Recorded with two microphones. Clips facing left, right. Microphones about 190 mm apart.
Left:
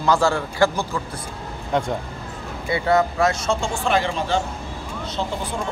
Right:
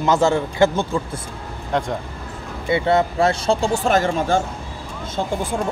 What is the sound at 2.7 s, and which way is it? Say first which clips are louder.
Speech: right 2 dB; 25° right (ahead or behind).